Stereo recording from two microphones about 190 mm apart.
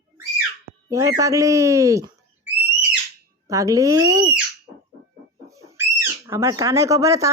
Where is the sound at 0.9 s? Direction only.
15° right (ahead or behind).